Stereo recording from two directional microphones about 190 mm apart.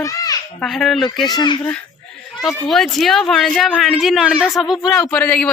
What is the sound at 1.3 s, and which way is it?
Speech, 25° left (ahead or behind).